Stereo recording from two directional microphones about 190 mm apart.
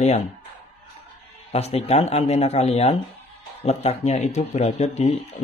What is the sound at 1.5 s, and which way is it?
Speech, 35° left (ahead or behind).